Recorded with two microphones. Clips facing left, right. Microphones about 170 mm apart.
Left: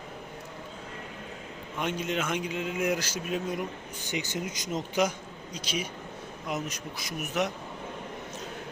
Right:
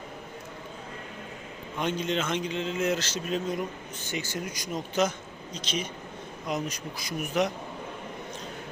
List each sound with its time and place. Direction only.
2.0 s a man's voice: 5° left (ahead or behind)